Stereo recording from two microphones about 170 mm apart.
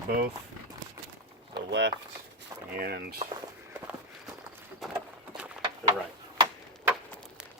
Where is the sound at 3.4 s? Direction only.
15° right (ahead or behind).